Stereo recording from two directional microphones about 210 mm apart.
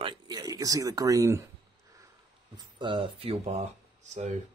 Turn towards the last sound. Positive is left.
turn(degrees=-35)  # may be behind; listen again after turning